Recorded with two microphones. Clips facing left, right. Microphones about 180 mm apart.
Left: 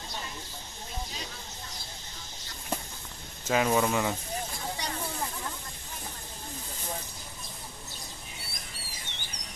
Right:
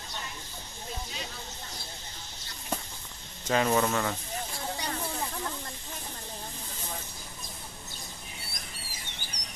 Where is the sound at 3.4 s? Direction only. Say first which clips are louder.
Even; 5° left (ahead or behind).